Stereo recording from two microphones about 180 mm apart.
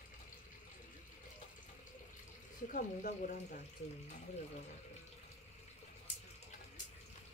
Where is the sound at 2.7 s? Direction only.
45° left (ahead or behind).